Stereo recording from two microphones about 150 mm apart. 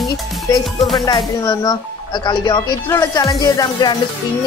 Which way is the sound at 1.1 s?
30° left (ahead or behind).